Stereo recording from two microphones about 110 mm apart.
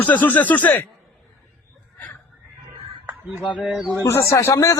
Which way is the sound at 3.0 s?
15° right (ahead or behind).